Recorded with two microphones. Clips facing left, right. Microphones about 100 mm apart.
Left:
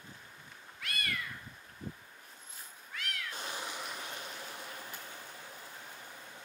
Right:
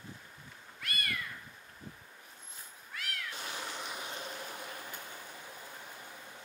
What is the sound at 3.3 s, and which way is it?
Cat, 15° left (ahead or behind).